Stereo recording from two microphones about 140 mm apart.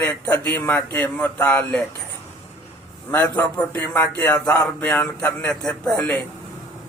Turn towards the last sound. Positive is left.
turn(degrees=10)  # may be behind; listen again after turning